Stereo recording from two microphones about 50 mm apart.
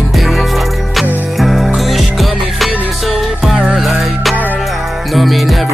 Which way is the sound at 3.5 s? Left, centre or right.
Centre.